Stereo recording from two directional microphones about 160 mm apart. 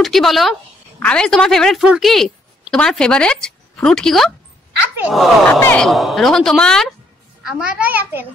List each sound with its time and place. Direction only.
0.0 s a woman's voice: centre (ahead or behind)
5.9 s a woman's voice: centre (ahead or behind)